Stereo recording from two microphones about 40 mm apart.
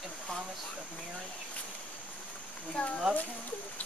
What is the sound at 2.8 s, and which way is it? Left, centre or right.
Speech, left.